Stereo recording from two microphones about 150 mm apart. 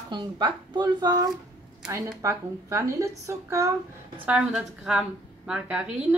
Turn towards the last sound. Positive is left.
turn(degrees=-5)  # may be behind; listen again after turning